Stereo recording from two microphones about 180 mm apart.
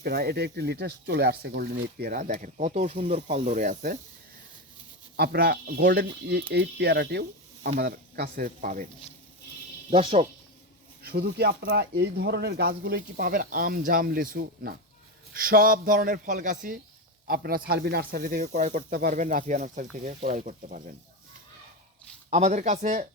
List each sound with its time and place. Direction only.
0.0 s speech: 60° right (ahead or behind)
5.1 s speech: 60° right (ahead or behind)
9.9 s speech: 35° right (ahead or behind)
11.0 s speech: 60° right (ahead or behind)
17.2 s speech: 55° right (ahead or behind)
18.4 s speech: 40° right (ahead or behind)
22.3 s speech: 40° right (ahead or behind)